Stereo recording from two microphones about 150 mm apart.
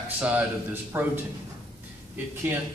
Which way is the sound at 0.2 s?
10° right (ahead or behind).